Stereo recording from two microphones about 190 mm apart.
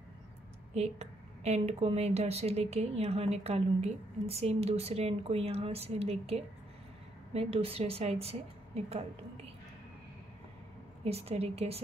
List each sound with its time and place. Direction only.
0.7 s a woman's voice: 35° right (ahead or behind)
11.1 s a woman's voice: 30° right (ahead or behind)